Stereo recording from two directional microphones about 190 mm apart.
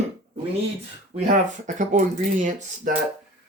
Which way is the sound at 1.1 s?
40° right (ahead or behind).